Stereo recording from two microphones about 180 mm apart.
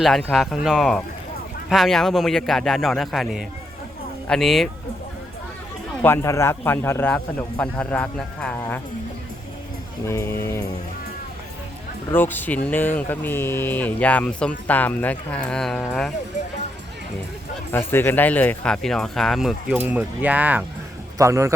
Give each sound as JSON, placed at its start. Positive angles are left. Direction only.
{"t": 0.0, "sound": "speech", "side_deg": 5}
{"t": 6.0, "sound": "speech", "side_deg": 15}
{"t": 10.1, "sound": "speech", "side_deg": 15}
{"t": 12.1, "sound": "speech", "side_deg": 10}
{"t": 17.7, "sound": "a man's voice", "side_deg": 15}